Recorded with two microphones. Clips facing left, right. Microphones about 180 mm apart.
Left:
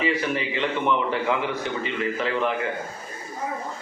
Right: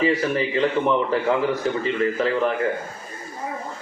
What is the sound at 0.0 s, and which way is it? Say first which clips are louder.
A man's voice: right 4 dB; 35° right (ahead or behind).